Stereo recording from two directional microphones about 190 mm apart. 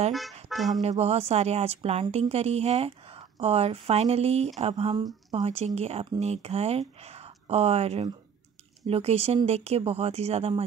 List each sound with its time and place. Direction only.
0.5 s music: centre (ahead or behind)
0.8 s a woman's voice: 35° right (ahead or behind)